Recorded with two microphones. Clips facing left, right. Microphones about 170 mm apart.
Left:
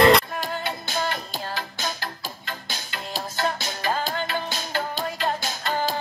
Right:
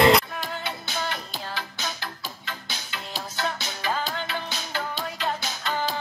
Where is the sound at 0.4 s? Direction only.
40° left (ahead or behind).